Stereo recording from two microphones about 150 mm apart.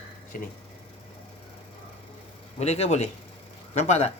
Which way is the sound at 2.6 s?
45° left (ahead or behind).